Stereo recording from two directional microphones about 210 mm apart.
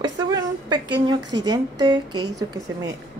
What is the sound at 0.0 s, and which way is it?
A woman's voice, 20° right (ahead or behind).